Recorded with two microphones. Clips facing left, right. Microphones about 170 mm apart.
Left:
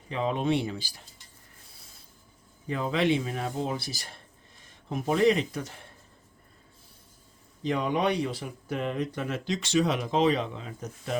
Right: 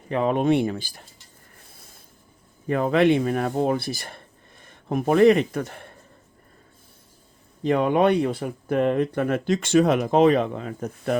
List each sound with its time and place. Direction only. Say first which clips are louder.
0.1 s speech: right 7 dB; 55° right (ahead or behind)
1.5 s rub: right 7 dB; 50° right (ahead or behind)
2.6 s speech: right 7 dB; 55° right (ahead or behind)
7.6 s speech: right 7 dB; 55° right (ahead or behind)